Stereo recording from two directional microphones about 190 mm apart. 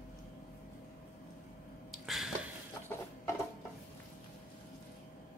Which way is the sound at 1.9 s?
Centre (ahead or behind).